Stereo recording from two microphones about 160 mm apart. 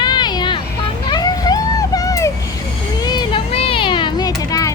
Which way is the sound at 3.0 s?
25° left (ahead or behind).